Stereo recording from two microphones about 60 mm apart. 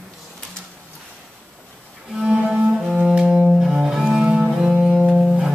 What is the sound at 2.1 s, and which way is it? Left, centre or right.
Music, centre.